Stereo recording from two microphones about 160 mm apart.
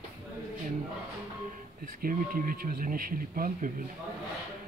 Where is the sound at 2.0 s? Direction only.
60° right (ahead or behind).